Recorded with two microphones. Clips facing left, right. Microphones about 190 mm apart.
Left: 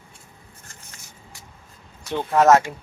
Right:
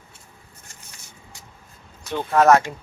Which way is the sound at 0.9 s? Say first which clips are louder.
Even; 20° right (ahead or behind).